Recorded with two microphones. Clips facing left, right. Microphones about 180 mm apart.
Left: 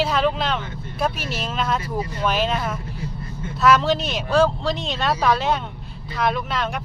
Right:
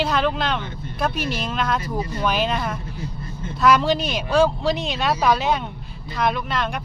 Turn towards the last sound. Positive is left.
turn(degrees=0)  # may be behind; listen again after turning